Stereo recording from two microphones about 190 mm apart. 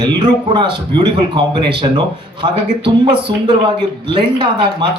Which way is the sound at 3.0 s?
25° right (ahead or behind).